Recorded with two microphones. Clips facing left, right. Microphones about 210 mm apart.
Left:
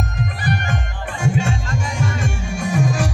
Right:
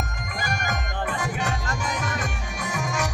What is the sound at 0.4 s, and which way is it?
Music, 30° left (ahead or behind).